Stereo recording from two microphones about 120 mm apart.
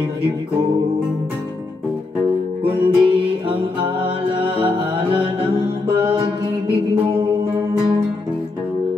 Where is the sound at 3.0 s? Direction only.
45° right (ahead or behind).